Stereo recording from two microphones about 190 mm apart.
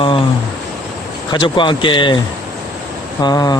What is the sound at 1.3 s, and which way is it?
Speech, 25° left (ahead or behind).